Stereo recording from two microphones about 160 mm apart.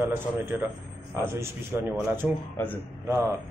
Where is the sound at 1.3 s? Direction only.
15° right (ahead or behind).